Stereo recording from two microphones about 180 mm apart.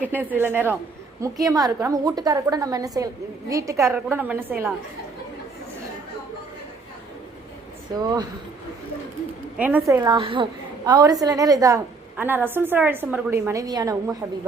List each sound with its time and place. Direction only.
0.3 s a woman's voice: 10° right (ahead or behind)
7.9 s a woman's voice: 20° right (ahead or behind)
9.6 s a woman's voice: 10° right (ahead or behind)